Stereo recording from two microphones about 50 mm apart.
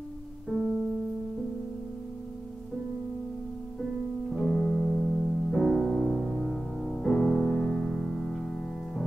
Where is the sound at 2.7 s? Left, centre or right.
Centre.